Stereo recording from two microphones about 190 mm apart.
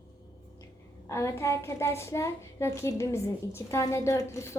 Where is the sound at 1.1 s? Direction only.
15° left (ahead or behind).